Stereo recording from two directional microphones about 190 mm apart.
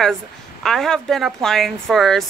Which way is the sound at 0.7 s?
Centre (ahead or behind).